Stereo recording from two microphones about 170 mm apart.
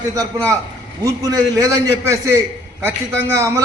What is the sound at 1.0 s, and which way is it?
A man's voice, 20° right (ahead or behind).